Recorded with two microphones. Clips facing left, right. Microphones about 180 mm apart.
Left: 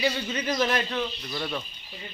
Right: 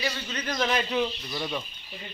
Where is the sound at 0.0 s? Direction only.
10° left (ahead or behind).